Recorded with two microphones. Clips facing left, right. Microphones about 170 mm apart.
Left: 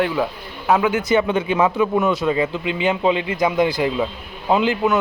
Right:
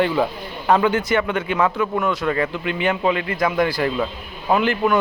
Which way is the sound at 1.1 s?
20° left (ahead or behind).